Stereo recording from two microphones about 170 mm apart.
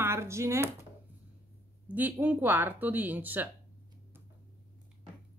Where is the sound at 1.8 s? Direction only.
10° right (ahead or behind).